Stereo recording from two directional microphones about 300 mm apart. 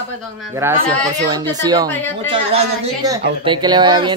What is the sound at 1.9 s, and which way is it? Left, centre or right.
Speech, centre.